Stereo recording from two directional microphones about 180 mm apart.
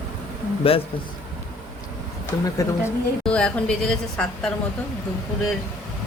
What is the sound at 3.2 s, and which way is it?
Speech, 5° left (ahead or behind).